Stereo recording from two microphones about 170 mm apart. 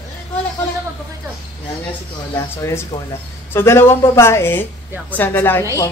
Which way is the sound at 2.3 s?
15° left (ahead or behind).